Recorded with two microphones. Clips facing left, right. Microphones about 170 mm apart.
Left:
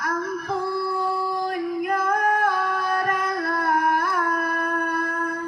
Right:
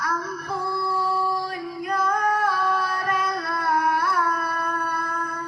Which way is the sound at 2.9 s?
50° left (ahead or behind).